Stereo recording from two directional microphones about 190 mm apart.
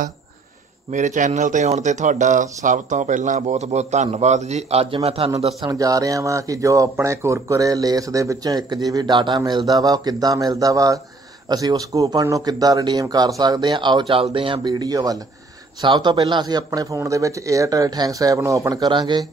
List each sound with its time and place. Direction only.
0.9 s speech: 40° right (ahead or behind)
5.7 s speech: 20° right (ahead or behind)